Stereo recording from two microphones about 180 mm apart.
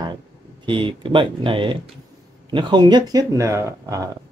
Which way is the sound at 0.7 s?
30° right (ahead or behind).